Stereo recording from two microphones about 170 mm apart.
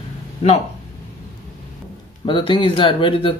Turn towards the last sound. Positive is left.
turn(degrees=30)  # may be behind; listen again after turning